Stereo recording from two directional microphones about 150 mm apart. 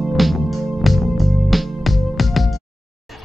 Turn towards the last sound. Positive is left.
turn(degrees=0)  # may be behind; listen again after turning